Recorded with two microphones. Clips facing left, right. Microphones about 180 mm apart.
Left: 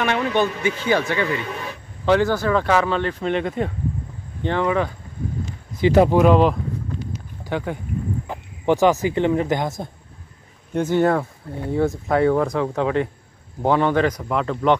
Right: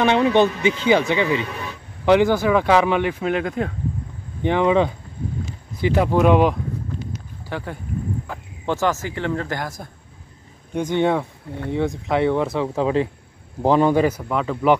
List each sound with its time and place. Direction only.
0.0 s speech: 25° right (ahead or behind); by 3.7 s centre (ahead or behind)
4.4 s speech: 15° right (ahead or behind)
5.8 s speech: 25° left (ahead or behind)
6.1 s speech: centre (ahead or behind)
7.4 s speech: 15° left (ahead or behind)
10.8 s speech: 5° left (ahead or behind)
12.8 s speech: 30° right (ahead or behind)
13.7 s speech: 10° right (ahead or behind)